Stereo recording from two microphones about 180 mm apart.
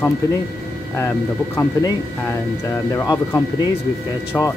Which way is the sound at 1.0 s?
15° left (ahead or behind).